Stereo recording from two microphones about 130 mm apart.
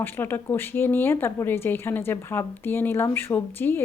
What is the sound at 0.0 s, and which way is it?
Speech, 15° left (ahead or behind).